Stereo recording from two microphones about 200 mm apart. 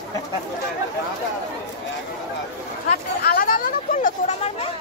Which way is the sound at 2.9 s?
45° left (ahead or behind).